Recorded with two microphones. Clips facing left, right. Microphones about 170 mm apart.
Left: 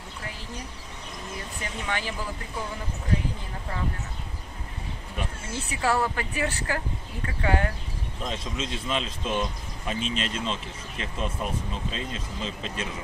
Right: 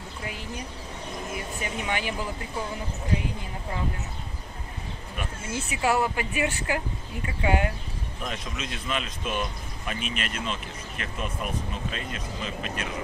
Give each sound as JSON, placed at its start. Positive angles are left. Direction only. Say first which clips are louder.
{"t": 1.6, "sound": "speech", "louder": "right 1 dB", "side_deg": -15}
{"t": 5.8, "sound": "speech", "louder": "right 1 dB", "side_deg": -15}
{"t": 8.2, "sound": "speech", "louder": "left 3 dB", "side_deg": 25}